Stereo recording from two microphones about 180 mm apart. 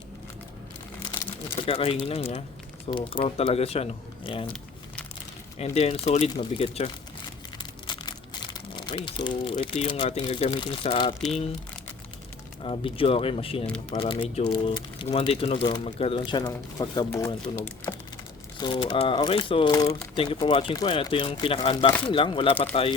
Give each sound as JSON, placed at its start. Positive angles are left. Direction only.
{"t": 1.1, "sound": "crumpling", "side_deg": 25}
{"t": 1.5, "sound": "speech", "side_deg": 30}
{"t": 5.5, "sound": "speech", "side_deg": 35}
{"t": 7.6, "sound": "crumpling", "side_deg": 25}
{"t": 12.6, "sound": "speech", "side_deg": 30}
{"t": 18.5, "sound": "speech", "side_deg": 25}
{"t": 19.7, "sound": "speech", "side_deg": 20}
{"t": 20.1, "sound": "speech", "side_deg": 30}